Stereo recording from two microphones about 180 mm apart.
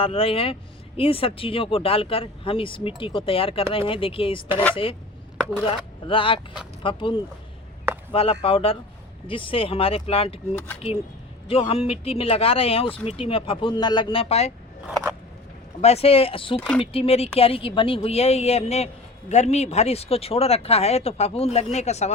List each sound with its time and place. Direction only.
0.0 s speech: 30° left (ahead or behind)
6.1 s speech: 30° left (ahead or behind)
11.4 s speech: 30° left (ahead or behind)
14.8 s scissors: 5° right (ahead or behind)
15.8 s speech: 35° left (ahead or behind)
16.6 s speech: 5° left (ahead or behind)
16.8 s speech: 30° left (ahead or behind)